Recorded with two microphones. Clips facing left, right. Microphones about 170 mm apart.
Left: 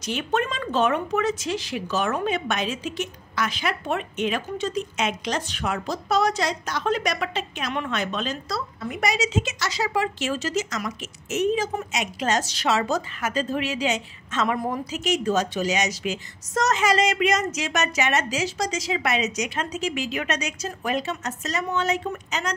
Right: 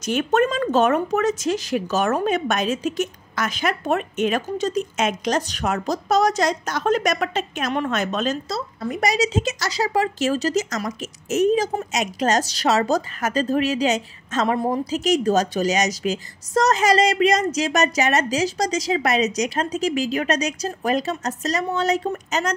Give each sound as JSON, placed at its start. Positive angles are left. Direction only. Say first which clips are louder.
{"t": 0.0, "sound": "a woman's voice", "louder": "right 6 dB", "side_deg": -45}